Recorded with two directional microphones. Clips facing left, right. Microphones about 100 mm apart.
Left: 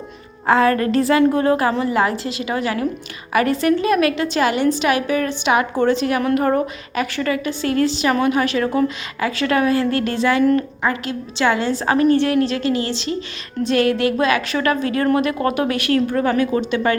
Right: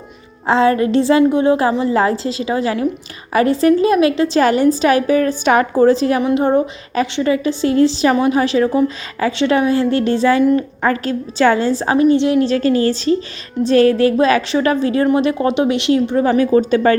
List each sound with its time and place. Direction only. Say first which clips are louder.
0.4 s a woman's voice: right 2 dB; 25° right (ahead or behind)
11.9 s a woman's voice: right 3 dB; 20° right (ahead or behind)
16.4 s a woman's voice: right 6 dB; 35° right (ahead or behind)